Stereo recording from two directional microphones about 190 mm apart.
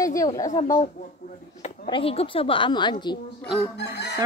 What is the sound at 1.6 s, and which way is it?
Speech, 30° left (ahead or behind).